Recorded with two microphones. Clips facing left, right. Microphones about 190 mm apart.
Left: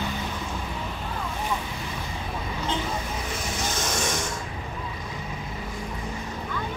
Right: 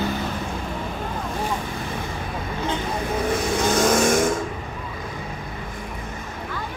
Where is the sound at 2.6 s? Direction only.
55° right (ahead or behind).